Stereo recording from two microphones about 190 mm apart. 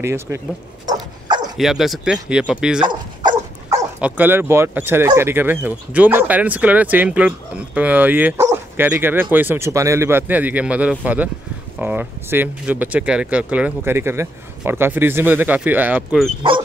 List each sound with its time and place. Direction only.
0.0 s speech: 15° right (ahead or behind)
0.8 s dog: 20° right (ahead or behind)
1.6 s speech: centre (ahead or behind)
2.9 s dog: 20° right (ahead or behind)
4.0 s speech: 10° right (ahead or behind)